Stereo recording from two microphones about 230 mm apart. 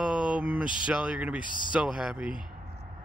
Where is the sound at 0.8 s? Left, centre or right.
Centre.